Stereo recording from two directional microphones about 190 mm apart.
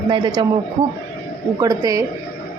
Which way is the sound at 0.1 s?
20° right (ahead or behind).